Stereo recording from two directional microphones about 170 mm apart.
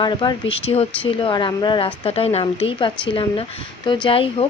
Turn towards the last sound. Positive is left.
turn(degrees=35)  # may be behind; listen again after turning